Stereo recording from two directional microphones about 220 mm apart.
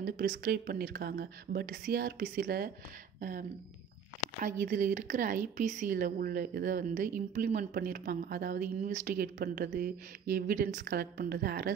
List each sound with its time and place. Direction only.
0.0 s speech: 40° right (ahead or behind)